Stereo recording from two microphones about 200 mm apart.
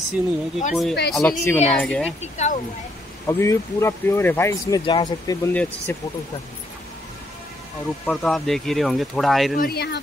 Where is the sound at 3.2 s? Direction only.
15° left (ahead or behind).